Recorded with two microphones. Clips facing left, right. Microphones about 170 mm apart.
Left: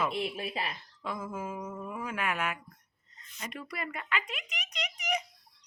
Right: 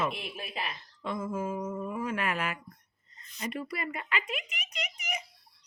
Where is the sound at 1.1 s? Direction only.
25° right (ahead or behind).